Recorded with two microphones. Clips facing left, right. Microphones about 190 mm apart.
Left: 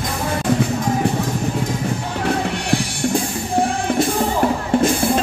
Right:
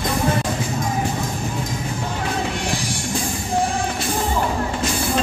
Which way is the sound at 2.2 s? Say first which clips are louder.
Left 5 dB; 60° left (ahead or behind).